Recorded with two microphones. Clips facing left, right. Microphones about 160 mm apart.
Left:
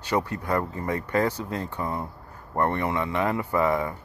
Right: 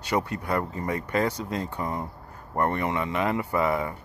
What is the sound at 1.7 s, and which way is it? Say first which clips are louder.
Speech: even; 15° right (ahead or behind).